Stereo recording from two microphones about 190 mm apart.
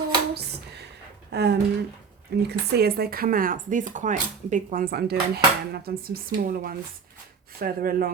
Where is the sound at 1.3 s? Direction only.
60° right (ahead or behind).